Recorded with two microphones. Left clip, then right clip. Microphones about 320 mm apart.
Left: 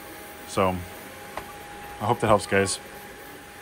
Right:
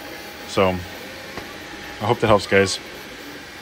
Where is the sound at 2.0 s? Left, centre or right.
Centre.